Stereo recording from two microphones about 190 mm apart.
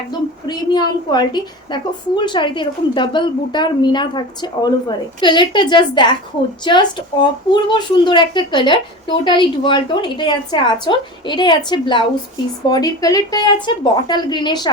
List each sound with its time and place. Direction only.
0.4 s a woman's voice: 20° left (ahead or behind)